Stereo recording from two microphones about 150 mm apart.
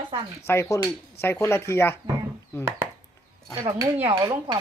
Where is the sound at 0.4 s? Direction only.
20° left (ahead or behind).